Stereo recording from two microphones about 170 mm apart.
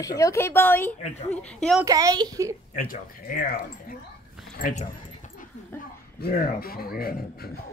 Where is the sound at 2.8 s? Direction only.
55° left (ahead or behind).